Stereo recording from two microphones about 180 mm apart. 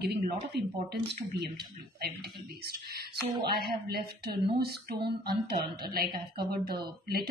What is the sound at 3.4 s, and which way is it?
Speech, 60° right (ahead or behind).